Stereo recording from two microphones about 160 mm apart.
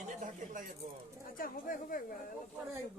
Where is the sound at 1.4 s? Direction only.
60° left (ahead or behind).